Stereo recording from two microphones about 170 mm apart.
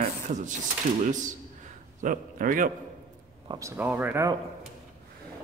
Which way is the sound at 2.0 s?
50° right (ahead or behind).